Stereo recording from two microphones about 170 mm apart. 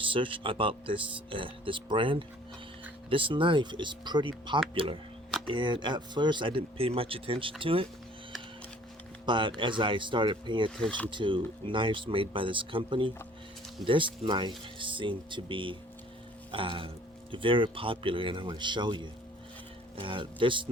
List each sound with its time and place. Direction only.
0.0 s speech: 30° right (ahead or behind)
9.2 s speech: 30° right (ahead or behind)
10.8 s speech: 5° left (ahead or behind)
11.1 s speech: 30° right (ahead or behind)